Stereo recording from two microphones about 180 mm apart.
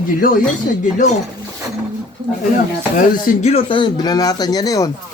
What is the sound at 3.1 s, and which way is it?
Speech, 40° left (ahead or behind).